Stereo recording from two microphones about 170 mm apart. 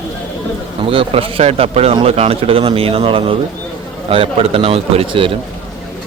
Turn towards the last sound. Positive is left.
turn(degrees=-30)  # may be behind; listen again after turning